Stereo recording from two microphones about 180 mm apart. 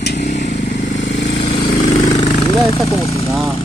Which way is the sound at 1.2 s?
30° left (ahead or behind).